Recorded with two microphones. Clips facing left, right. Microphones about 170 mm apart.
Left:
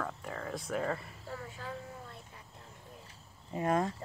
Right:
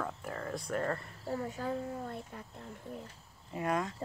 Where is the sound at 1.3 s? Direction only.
40° right (ahead or behind).